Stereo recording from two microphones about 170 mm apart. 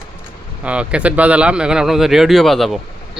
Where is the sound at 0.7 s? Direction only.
5° right (ahead or behind).